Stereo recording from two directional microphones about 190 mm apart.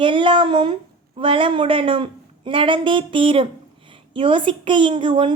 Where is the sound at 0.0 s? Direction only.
25° right (ahead or behind).